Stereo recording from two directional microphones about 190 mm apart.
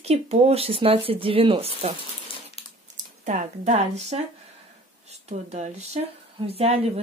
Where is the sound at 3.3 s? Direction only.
40° right (ahead or behind).